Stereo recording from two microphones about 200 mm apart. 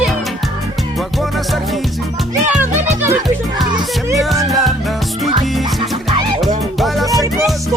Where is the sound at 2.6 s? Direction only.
10° right (ahead or behind).